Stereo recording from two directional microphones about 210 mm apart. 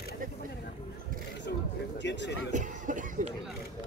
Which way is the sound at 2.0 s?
55° left (ahead or behind).